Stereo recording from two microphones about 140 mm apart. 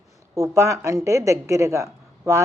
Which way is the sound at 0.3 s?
20° right (ahead or behind).